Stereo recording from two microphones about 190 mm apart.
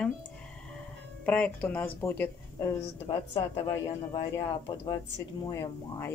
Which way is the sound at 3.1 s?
25° left (ahead or behind).